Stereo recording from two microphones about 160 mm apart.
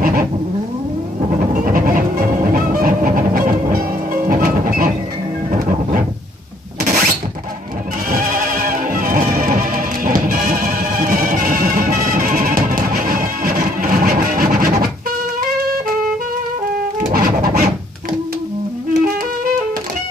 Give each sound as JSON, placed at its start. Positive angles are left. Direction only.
{"t": 1.5, "sound": "music", "side_deg": -60}
{"t": 6.8, "sound": "mechanisms", "side_deg": -55}
{"t": 8.1, "sound": "music", "side_deg": -60}
{"t": 17.1, "sound": "music", "side_deg": -60}